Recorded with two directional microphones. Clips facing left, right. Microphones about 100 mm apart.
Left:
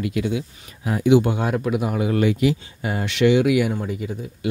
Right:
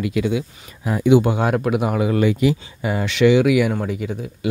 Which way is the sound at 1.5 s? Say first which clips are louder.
Right 3 dB; 65° right (ahead or behind).